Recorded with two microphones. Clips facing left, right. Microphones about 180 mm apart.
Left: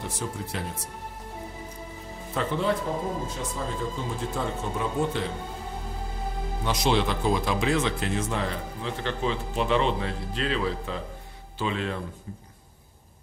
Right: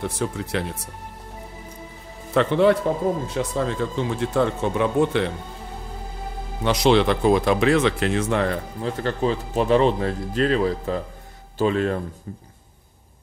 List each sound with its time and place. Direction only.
0.0 s speech: 70° right (ahead or behind)
2.3 s speech: 70° right (ahead or behind)
6.6 s speech: 70° right (ahead or behind)
8.8 s speech: 40° right (ahead or behind)